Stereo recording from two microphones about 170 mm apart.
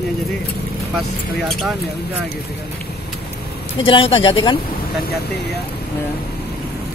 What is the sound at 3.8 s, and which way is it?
Speech, 30° left (ahead or behind).